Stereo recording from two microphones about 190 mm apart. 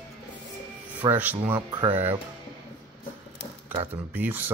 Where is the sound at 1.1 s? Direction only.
10° right (ahead or behind).